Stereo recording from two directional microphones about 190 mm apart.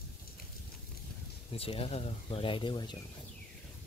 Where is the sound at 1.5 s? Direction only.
30° left (ahead or behind).